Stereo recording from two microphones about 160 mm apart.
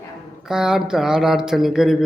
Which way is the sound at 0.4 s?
5° right (ahead or behind).